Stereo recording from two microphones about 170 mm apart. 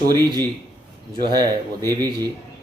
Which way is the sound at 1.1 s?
25° right (ahead or behind).